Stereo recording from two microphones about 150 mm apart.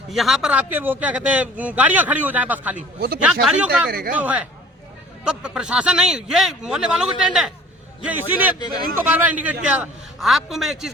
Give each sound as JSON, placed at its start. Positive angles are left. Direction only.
{"t": 0.1, "sound": "a man's voice", "side_deg": 0}
{"t": 3.8, "sound": "speech", "side_deg": -85}
{"t": 4.2, "sound": "a man's voice", "side_deg": -10}
{"t": 8.5, "sound": "speech", "side_deg": 30}
{"t": 9.0, "sound": "a man's voice", "side_deg": -10}